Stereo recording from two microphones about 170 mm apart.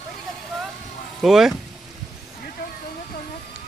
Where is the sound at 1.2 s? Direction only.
Centre (ahead or behind).